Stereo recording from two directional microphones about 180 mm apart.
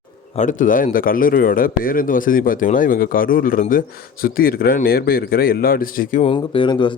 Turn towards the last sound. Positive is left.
turn(degrees=25)  # may be behind; listen again after turning